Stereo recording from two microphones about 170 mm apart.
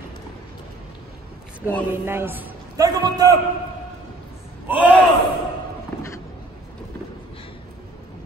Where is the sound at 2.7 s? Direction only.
20° right (ahead or behind).